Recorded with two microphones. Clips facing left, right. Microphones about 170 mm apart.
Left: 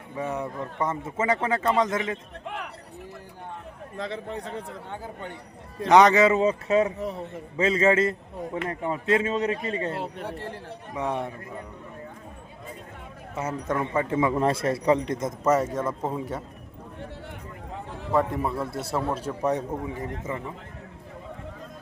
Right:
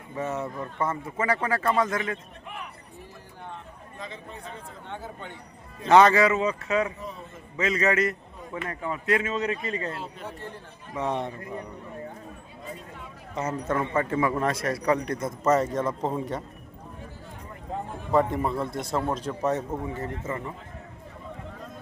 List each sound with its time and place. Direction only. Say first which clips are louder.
0.2 s speech: even; 15° left (ahead or behind)
3.9 s speech: left 8 dB; 75° left (ahead or behind)
5.9 s a man's voice: left 1 dB; 15° left (ahead or behind)
6.3 s a man's voice: left 4 dB; 35° left (ahead or behind)
7.0 s speech: left 7 dB; 70° left (ahead or behind)
7.5 s speech: left 3 dB; 30° left (ahead or behind)
10.0 s speech: left 4 dB; 70° left (ahead or behind)
10.9 s a man's voice: even; 10° left (ahead or behind)
13.3 s a man's voice: right 1 dB; 10° left (ahead or behind)
15.4 s a man's voice: even; 10° left (ahead or behind)
18.1 s a man's voice: right 1 dB; centre (ahead or behind)